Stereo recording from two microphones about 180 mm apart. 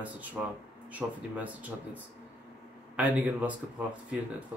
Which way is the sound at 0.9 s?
10° right (ahead or behind).